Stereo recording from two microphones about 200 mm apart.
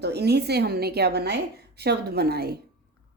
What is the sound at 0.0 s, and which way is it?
A woman's voice, 55° right (ahead or behind).